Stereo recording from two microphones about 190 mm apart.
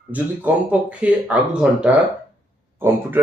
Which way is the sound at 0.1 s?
10° right (ahead or behind).